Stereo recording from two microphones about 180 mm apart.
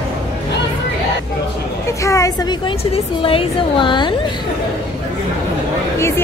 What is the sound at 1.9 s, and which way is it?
A woman's voice, 15° left (ahead or behind).